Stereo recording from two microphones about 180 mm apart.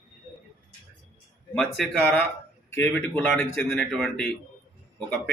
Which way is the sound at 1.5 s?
5° left (ahead or behind).